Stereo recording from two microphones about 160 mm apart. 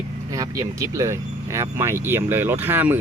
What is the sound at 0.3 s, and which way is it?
Speech, 20° right (ahead or behind).